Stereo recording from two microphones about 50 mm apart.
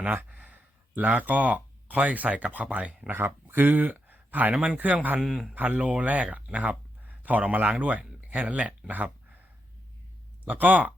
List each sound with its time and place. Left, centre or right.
0.0 s speech: right
3.1 s speech: right
3.4 s a sound: right
4.5 s speech: centre
4.8 s a man's voice: right
5.2 s speech: centre
5.5 s speech: right
10.5 s a man's voice: right